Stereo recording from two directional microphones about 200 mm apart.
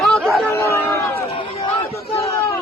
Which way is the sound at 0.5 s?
15° left (ahead or behind).